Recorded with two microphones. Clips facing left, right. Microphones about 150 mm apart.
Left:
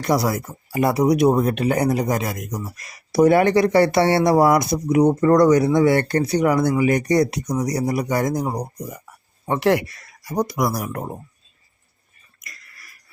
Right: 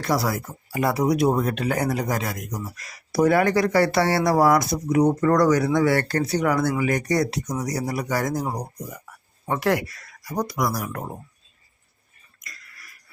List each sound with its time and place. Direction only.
0.0 s speech: 20° left (ahead or behind)